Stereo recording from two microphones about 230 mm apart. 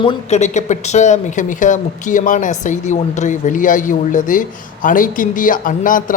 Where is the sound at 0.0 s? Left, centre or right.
Left.